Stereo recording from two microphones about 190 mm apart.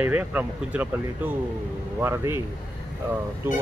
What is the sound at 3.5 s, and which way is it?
Speech, 10° right (ahead or behind).